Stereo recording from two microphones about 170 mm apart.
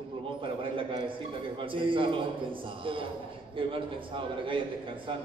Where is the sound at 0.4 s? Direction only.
30° right (ahead or behind).